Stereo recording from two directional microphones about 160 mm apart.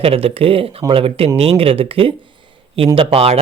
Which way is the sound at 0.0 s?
35° right (ahead or behind).